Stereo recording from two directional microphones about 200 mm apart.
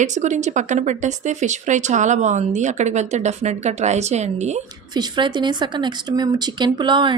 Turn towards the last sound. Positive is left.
turn(degrees=-25)  # may be behind; listen again after turning